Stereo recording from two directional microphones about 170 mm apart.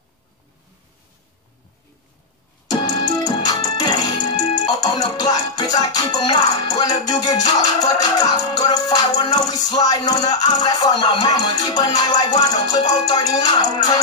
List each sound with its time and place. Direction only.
2.7 s music: 25° left (ahead or behind)